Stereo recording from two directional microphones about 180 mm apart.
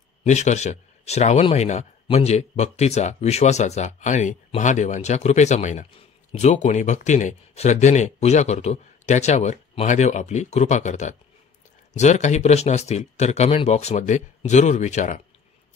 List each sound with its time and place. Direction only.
0.2 s speech: 40° left (ahead or behind)